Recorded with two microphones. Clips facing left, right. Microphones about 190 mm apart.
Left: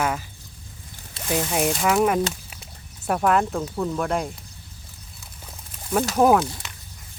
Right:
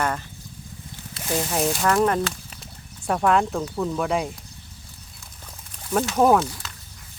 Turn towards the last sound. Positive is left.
turn(degrees=5)  # may be behind; listen again after turning